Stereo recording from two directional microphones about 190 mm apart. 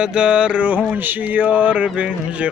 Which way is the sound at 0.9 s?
10° right (ahead or behind).